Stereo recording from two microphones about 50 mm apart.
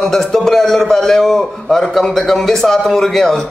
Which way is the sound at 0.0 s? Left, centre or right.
Centre.